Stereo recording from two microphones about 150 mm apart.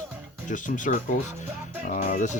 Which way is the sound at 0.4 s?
60° left (ahead or behind).